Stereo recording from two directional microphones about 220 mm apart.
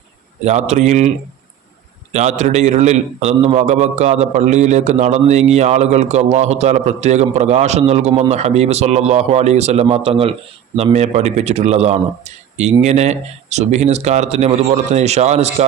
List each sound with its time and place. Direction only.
0.4 s a man's voice: 30° right (ahead or behind)
2.1 s a man's voice: 30° right (ahead or behind)